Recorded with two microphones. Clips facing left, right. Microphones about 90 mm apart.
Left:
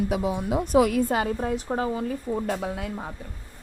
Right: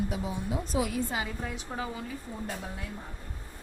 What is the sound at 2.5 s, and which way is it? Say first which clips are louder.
Speech: left 9 dB; 90° left.